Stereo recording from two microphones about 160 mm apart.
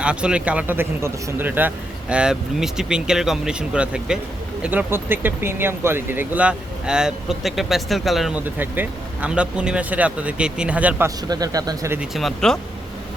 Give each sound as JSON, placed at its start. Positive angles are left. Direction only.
{"t": 0.0, "sound": "speech", "side_deg": -5}
{"t": 11.3, "sound": "speech", "side_deg": -25}
{"t": 11.9, "sound": "speech", "side_deg": 0}